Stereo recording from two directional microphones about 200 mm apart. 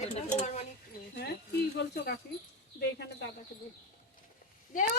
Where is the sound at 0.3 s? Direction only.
35° left (ahead or behind).